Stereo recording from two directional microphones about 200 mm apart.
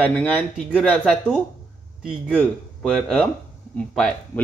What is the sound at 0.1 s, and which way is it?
A man's voice, 5° left (ahead or behind).